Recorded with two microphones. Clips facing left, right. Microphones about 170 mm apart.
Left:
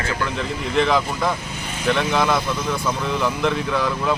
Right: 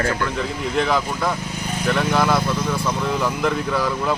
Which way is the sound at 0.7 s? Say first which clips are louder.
Left 2 dB; centre (ahead or behind).